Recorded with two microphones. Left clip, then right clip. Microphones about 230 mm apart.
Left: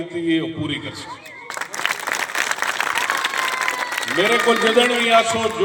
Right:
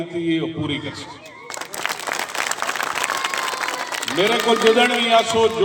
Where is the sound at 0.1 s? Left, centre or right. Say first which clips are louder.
Left 2 dB; left.